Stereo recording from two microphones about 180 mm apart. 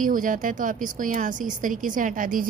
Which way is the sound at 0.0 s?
50° right (ahead or behind).